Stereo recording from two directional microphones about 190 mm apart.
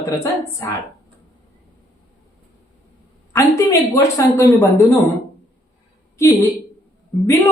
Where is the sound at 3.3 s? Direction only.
15° left (ahead or behind).